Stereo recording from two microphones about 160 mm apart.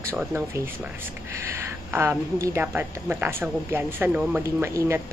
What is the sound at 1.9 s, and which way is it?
Speech, 15° right (ahead or behind).